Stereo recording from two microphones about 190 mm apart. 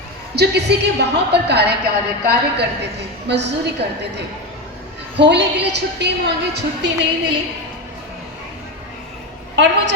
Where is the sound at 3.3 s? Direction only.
65° right (ahead or behind).